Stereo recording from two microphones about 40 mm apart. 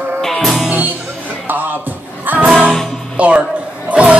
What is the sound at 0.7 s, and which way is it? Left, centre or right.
Music, right.